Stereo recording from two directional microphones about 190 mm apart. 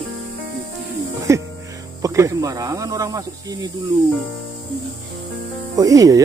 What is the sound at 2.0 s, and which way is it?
Speech, 15° right (ahead or behind).